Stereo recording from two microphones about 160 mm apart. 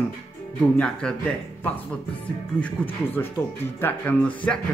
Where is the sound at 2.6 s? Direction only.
10° left (ahead or behind).